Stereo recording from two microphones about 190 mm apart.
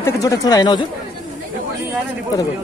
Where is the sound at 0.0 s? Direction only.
15° left (ahead or behind).